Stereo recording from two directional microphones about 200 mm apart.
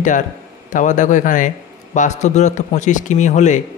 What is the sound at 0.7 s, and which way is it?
A man's voice, 40° left (ahead or behind).